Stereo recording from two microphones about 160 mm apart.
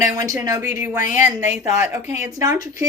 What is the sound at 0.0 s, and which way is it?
A woman's voice, 20° right (ahead or behind).